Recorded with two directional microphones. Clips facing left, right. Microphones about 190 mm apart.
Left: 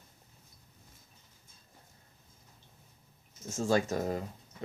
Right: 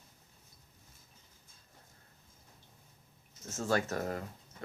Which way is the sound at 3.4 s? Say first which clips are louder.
Left 3 dB; 15° left (ahead or behind).